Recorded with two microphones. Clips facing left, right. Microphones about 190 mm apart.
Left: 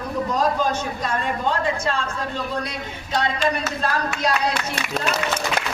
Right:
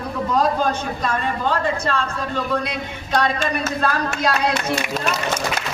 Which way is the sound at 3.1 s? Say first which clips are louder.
Right 1 dB; 60° right (ahead or behind).